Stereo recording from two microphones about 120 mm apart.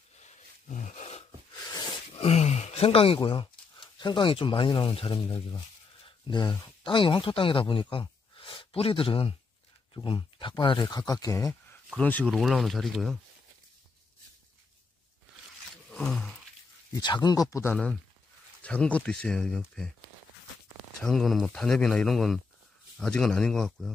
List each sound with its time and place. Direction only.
0.2 s a sound: 90° left; by 1.2 s 70° left (ahead or behind)
1.5 s a sound: 35° left (ahead or behind)
2.1 s a sound: 60° left (ahead or behind)
3.2 s speech: 40° left (ahead or behind)
12.0 s speech: 15° left (ahead or behind)
12.3 s speech: centre (ahead or behind)
15.9 s roar: 5° left (ahead or behind)
17.0 s speech: 35° left (ahead or behind)
18.6 s speech: 10° left (ahead or behind)
21.0 s speech: 5° left (ahead or behind)